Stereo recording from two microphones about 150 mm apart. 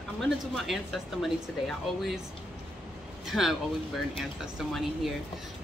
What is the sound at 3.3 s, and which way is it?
Speech, centre (ahead or behind).